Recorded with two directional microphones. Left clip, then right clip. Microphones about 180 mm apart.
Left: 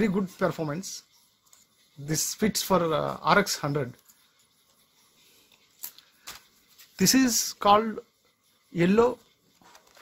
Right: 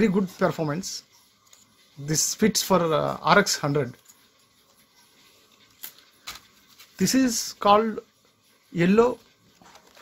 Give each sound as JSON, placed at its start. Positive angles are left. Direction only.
{"t": 0.0, "sound": "speech", "side_deg": 5}
{"t": 2.0, "sound": "speech", "side_deg": 0}
{"t": 7.0, "sound": "speech", "side_deg": 35}
{"t": 7.5, "sound": "speech", "side_deg": 15}